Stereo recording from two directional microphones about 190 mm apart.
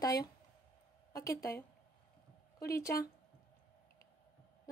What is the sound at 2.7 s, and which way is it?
Speech, 15° left (ahead or behind).